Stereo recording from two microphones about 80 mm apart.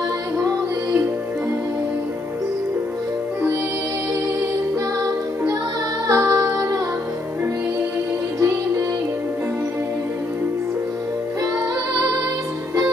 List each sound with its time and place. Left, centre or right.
6.0 s music: right